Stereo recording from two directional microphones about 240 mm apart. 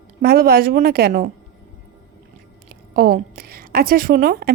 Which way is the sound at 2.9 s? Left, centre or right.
Right.